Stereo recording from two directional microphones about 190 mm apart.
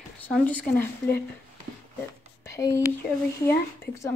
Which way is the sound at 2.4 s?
15° left (ahead or behind).